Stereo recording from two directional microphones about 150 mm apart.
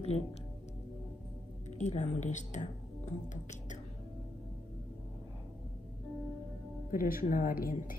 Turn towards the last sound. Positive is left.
turn(degrees=70)  # may be behind; listen again after turning